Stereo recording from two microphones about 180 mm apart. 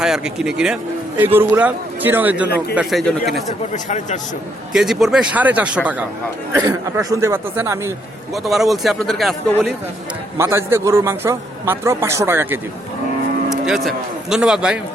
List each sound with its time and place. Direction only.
0.0 s a man's voice: 5° right (ahead or behind)
2.7 s a man's voice: centre (ahead or behind)
3.7 s speech: 40° left (ahead or behind)
4.7 s a man's voice: centre (ahead or behind)
6.5 s a man's voice: 15° right (ahead or behind)
8.4 s a man's voice: centre (ahead or behind)
10.3 s a man's voice: 15° right (ahead or behind)
13.5 s speech: centre (ahead or behind)